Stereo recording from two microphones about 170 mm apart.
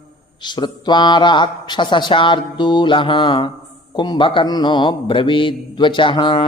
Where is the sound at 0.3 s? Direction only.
25° left (ahead or behind).